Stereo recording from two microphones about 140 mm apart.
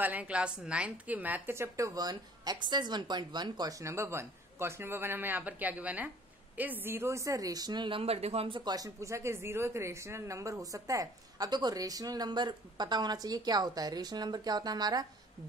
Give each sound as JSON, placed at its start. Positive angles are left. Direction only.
{"t": 0.0, "sound": "speech", "side_deg": -10}